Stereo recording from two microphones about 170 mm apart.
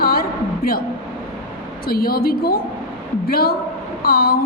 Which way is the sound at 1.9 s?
60° left (ahead or behind).